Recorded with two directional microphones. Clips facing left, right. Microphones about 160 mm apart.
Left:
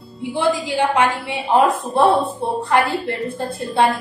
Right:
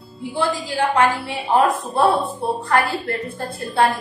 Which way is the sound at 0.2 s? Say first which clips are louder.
Left 3 dB; 20° left (ahead or behind).